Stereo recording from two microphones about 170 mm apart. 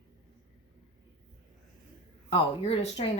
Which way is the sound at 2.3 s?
35° left (ahead or behind).